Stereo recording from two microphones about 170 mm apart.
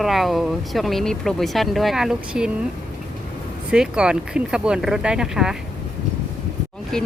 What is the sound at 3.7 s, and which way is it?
Speech, 5° right (ahead or behind).